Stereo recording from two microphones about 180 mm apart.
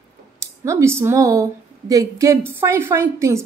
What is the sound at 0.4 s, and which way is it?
A woman's voice, 15° right (ahead or behind).